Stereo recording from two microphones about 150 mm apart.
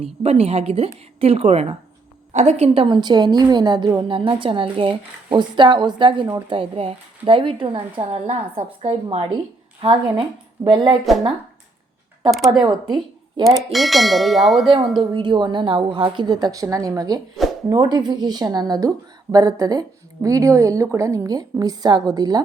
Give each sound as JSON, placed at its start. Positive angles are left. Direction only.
{"t": 0.0, "sound": "a woman's voice", "side_deg": -40}
{"t": 12.3, "sound": "bell", "side_deg": 0}
{"t": 12.6, "sound": "speech", "side_deg": -30}
{"t": 13.7, "sound": "bell", "side_deg": 0}
{"t": 15.1, "sound": "a woman's voice", "side_deg": -30}